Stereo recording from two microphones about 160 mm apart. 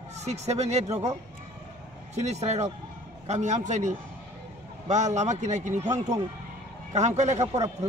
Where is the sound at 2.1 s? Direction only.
45° right (ahead or behind).